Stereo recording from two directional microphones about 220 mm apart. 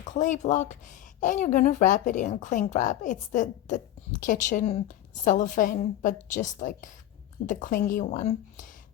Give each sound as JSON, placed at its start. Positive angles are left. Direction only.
{"t": 0.0, "sound": "a woman's voice", "side_deg": 35}